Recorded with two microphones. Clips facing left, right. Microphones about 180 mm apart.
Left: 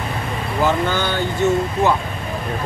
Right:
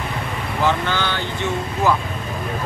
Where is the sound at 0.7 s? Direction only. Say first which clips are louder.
Left 1 dB; 45° left (ahead or behind).